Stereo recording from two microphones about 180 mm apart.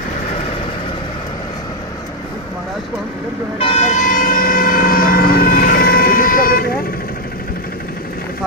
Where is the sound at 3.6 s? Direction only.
35° left (ahead or behind); by 7.1 s 55° left (ahead or behind).